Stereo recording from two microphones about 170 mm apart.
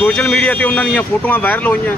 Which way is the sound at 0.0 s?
5° left (ahead or behind).